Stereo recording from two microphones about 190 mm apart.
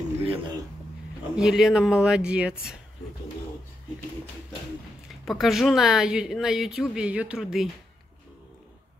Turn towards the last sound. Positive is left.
turn(degrees=0)  # may be behind; listen again after turning